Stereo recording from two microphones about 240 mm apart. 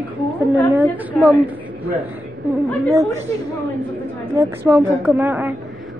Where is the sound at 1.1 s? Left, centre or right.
Centre.